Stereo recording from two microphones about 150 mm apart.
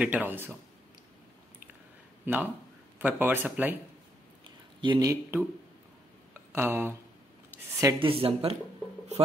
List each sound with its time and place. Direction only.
0.0 s a man's voice: 10° right (ahead or behind)
2.2 s a man's voice: 10° right (ahead or behind)
4.8 s speech: 25° right (ahead or behind)
7.8 s speech: 35° right (ahead or behind)